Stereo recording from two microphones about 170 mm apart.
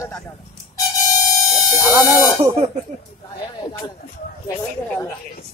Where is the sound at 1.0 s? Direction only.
20° left (ahead or behind).